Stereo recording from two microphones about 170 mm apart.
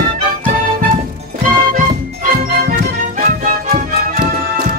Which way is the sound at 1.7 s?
55° right (ahead or behind).